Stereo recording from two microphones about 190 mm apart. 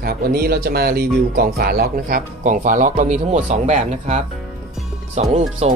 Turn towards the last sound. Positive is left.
turn(degrees=-35)  # may be behind; listen again after turning